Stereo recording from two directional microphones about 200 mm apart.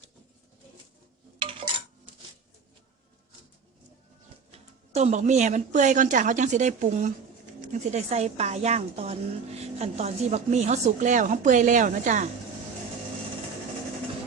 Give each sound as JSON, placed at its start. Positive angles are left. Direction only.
{"t": 1.4, "sound": "dishes", "side_deg": -25}
{"t": 4.9, "sound": "speech", "side_deg": -35}